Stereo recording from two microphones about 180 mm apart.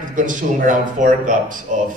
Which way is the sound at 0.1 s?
45° right (ahead or behind).